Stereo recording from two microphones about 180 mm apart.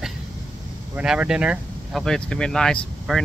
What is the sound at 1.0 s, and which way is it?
Speech, 5° right (ahead or behind).